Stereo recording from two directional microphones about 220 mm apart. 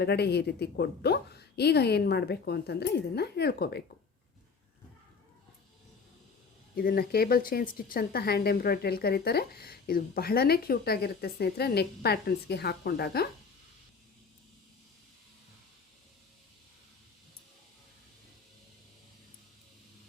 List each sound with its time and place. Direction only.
0.0 s speech: 45° left (ahead or behind)
6.7 s speech: 45° left (ahead or behind)